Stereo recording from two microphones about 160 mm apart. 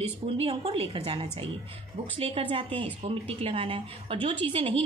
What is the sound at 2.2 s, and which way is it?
A woman's voice, 35° right (ahead or behind).